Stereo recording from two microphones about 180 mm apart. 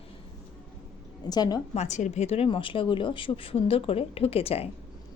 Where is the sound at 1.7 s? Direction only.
40° left (ahead or behind).